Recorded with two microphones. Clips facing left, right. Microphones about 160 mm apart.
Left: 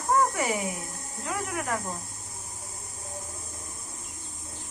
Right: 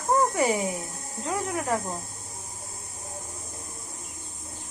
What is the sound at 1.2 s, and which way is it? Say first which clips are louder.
Speech: right 3 dB; 25° right (ahead or behind).